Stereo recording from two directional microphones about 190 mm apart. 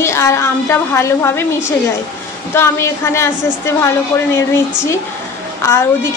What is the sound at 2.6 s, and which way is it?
Speech, 15° left (ahead or behind).